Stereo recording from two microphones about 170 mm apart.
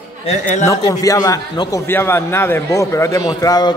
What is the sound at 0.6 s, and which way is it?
A man's voice, 20° left (ahead or behind).